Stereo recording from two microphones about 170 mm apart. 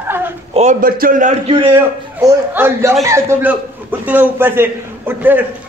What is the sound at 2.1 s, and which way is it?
A man's voice, 15° right (ahead or behind).